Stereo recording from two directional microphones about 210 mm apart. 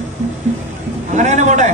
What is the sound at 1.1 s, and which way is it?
Speech, 35° right (ahead or behind).